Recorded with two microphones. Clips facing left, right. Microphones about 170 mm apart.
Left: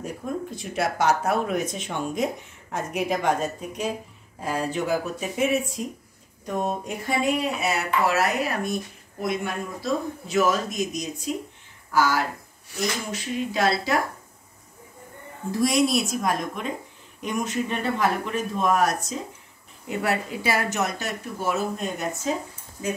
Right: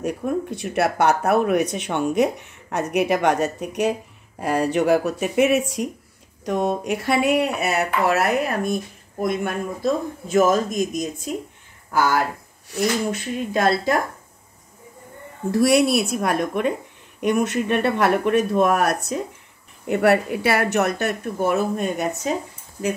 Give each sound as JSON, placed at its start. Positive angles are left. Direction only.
{"t": 0.0, "sound": "a man's voice", "side_deg": -70}
{"t": 15.5, "sound": "speech", "side_deg": -65}